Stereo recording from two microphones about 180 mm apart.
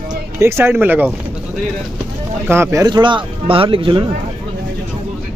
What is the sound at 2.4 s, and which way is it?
Speech, 15° right (ahead or behind).